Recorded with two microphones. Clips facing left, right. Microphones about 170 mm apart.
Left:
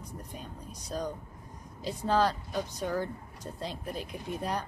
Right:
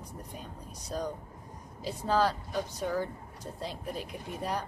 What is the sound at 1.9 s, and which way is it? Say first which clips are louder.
Speech: left 1 dB; 5° right (ahead or behind).